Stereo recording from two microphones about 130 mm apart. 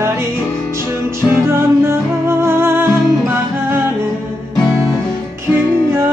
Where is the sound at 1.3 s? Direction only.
20° right (ahead or behind).